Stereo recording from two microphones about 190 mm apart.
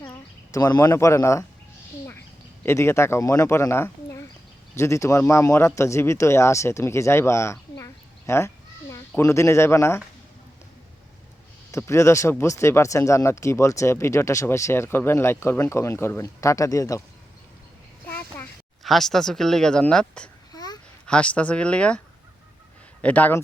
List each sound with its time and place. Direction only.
0.0 s speech: 15° left (ahead or behind)
2.6 s speech: 15° left (ahead or behind)
11.7 s speech: 15° left (ahead or behind)
18.1 s a sound: 10° left (ahead or behind)
18.8 s speech: centre (ahead or behind)
20.5 s babbling: 20° left (ahead or behind)
21.1 s speech: 5° left (ahead or behind)